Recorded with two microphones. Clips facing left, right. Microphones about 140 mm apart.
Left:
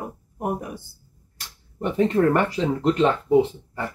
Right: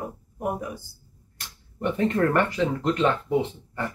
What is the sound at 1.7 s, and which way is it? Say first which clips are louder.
Speech: left 3 dB; 30° left (ahead or behind).